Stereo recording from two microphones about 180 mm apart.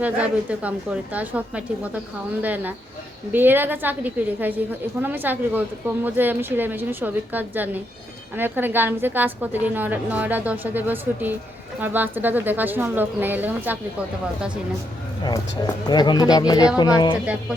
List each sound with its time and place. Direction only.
0.0 s a woman's voice: 5° right (ahead or behind)
15.2 s speech: 20° left (ahead or behind)